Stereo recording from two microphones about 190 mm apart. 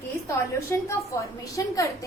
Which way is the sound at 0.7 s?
15° left (ahead or behind).